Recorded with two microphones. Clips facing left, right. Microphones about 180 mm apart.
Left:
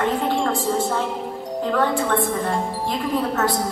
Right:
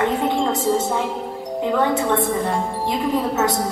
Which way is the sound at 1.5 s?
15° right (ahead or behind).